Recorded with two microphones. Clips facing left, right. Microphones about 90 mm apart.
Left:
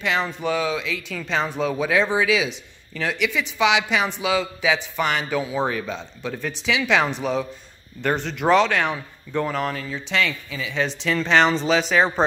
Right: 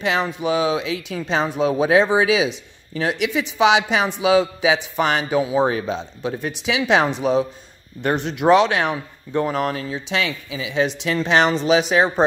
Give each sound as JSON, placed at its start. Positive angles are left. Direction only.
{"t": 0.0, "sound": "a woman's voice", "side_deg": -15}